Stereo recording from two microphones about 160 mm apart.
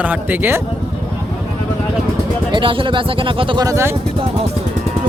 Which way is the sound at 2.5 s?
30° right (ahead or behind).